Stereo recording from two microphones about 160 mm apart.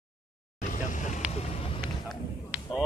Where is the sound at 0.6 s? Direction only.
50° left (ahead or behind).